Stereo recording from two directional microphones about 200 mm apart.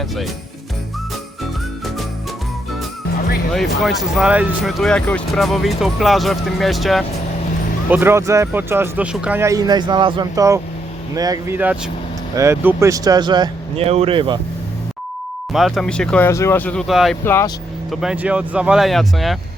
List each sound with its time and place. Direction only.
3.5 s speech: centre (ahead or behind)
7.9 s speech: 10° right (ahead or behind); by 14.3 s 25° right (ahead or behind)
15.5 s speech: centre (ahead or behind)
17.2 s speech: 10° left (ahead or behind)
18.0 s speech: 5° right (ahead or behind)